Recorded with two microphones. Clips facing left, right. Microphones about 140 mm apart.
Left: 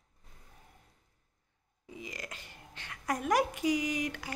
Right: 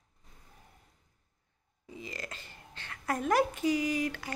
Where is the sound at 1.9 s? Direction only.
15° left (ahead or behind).